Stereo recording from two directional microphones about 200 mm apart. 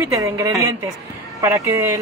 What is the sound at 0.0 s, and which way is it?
Speech, 15° right (ahead or behind).